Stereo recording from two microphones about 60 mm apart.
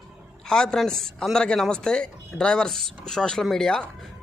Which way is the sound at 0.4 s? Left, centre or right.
Centre.